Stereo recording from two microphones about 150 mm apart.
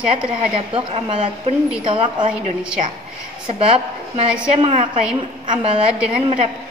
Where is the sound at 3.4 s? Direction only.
40° right (ahead or behind).